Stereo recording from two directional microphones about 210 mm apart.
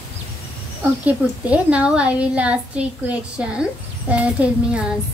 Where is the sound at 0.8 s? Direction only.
5° right (ahead or behind).